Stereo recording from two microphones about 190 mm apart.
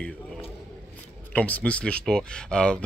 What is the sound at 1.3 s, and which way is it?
Speech, 10° left (ahead or behind).